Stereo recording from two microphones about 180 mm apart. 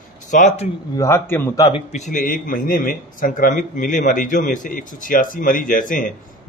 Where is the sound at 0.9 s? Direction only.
15° left (ahead or behind).